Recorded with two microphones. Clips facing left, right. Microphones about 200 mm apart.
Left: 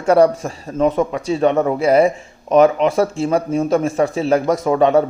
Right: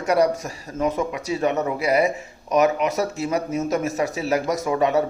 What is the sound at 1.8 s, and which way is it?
Speech, 30° left (ahead or behind).